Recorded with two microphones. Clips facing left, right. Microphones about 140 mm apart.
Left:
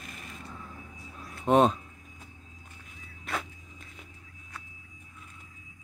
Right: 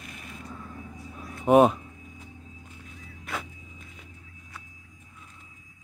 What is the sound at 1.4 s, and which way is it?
Speech, 10° right (ahead or behind).